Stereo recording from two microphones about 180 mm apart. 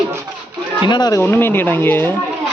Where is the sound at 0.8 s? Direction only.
25° left (ahead or behind).